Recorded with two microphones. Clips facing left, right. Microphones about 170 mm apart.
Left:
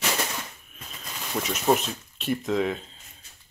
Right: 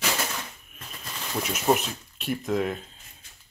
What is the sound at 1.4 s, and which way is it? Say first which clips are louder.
Speech: left 1 dB; centre (ahead or behind).